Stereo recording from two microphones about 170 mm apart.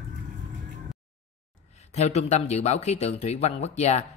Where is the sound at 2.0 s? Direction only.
40° left (ahead or behind).